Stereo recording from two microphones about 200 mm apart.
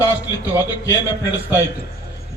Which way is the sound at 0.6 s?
20° left (ahead or behind).